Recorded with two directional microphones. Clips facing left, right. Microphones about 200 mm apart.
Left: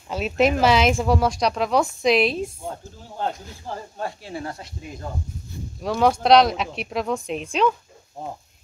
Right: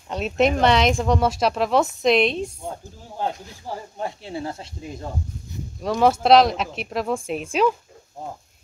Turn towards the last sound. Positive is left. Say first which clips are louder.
# right 1 dB
turn(degrees=-5)  # may be behind; listen again after turning